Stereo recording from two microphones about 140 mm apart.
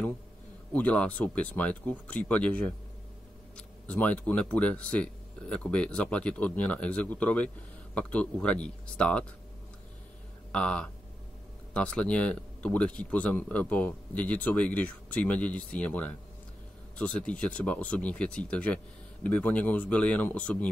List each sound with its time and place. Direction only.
0.7 s speech: 10° left (ahead or behind)
10.5 s speech: 5° left (ahead or behind)